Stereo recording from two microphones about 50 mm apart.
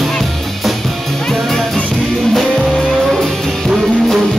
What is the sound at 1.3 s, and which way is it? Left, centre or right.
Music, centre.